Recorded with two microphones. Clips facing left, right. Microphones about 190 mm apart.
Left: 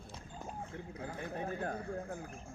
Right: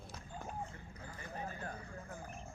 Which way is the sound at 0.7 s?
65° left (ahead or behind).